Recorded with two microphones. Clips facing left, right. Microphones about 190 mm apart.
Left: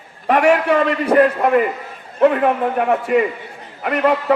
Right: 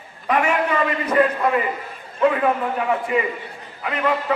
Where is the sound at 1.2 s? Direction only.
60° left (ahead or behind).